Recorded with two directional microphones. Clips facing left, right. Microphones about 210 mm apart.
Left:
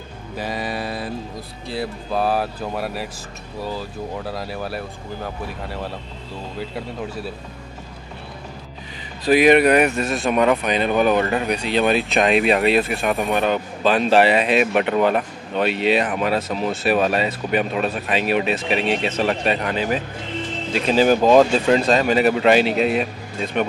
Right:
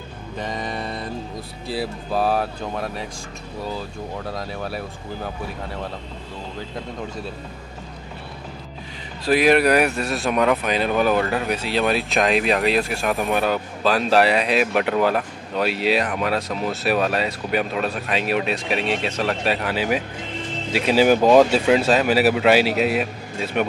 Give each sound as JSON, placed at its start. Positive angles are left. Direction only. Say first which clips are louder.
{"t": 0.4, "sound": "mantra", "louder": "left 2 dB", "side_deg": 5}
{"t": 1.7, "sound": "speech", "louder": "even", "side_deg": 0}
{"t": 9.3, "sound": "speech", "louder": "left 3 dB", "side_deg": 0}